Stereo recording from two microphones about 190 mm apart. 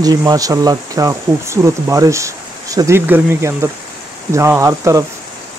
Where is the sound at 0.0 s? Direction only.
20° right (ahead or behind).